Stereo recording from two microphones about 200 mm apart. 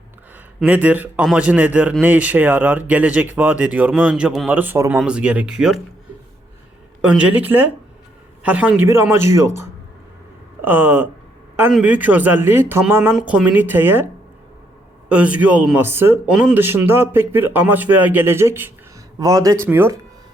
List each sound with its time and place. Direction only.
0.6 s speech: 5° right (ahead or behind)
7.0 s speech: 5° right (ahead or behind)
15.1 s speech: 5° right (ahead or behind)